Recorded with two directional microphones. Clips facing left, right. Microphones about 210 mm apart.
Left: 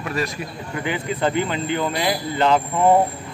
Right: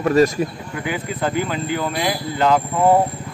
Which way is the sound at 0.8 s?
5° right (ahead or behind).